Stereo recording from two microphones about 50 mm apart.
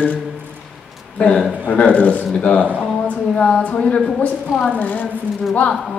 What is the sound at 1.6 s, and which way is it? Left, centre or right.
A woman's voice, left.